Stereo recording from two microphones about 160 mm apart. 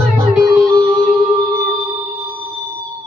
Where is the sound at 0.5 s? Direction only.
25° right (ahead or behind).